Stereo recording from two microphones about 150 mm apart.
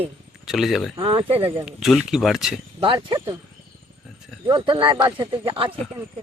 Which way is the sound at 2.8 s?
35° right (ahead or behind).